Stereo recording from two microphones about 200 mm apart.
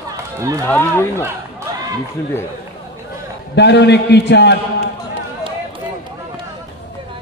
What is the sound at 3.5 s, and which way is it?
A man's voice, 60° left (ahead or behind).